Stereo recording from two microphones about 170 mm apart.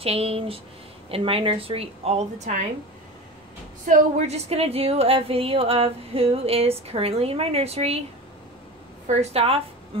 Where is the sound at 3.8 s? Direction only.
45° right (ahead or behind).